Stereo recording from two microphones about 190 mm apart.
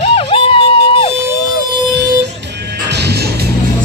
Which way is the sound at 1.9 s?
65° right (ahead or behind).